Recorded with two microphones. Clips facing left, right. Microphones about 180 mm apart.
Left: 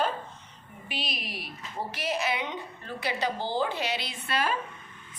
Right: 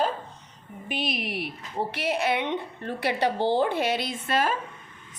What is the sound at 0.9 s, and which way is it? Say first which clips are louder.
A woman's voice: right 7 dB; 50° right (ahead or behind).